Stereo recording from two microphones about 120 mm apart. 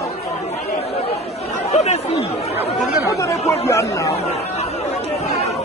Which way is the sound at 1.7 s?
70° left (ahead or behind).